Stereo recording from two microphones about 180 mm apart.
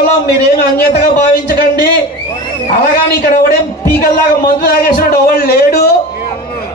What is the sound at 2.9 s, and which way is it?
A man's voice, 55° left (ahead or behind).